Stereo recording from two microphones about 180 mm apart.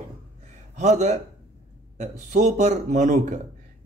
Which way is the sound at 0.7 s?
40° right (ahead or behind).